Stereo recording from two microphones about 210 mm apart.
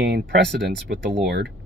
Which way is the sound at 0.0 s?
50° right (ahead or behind).